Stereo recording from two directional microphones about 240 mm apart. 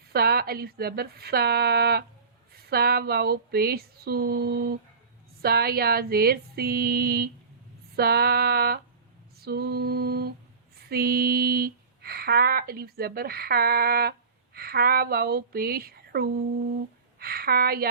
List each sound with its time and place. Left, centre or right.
0.1 s speech: right